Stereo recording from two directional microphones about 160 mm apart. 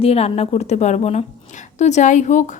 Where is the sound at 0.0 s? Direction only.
40° left (ahead or behind).